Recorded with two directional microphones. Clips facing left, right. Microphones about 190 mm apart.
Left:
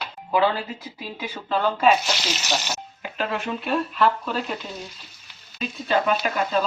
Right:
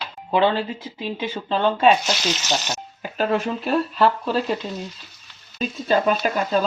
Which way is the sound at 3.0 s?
35° right (ahead or behind).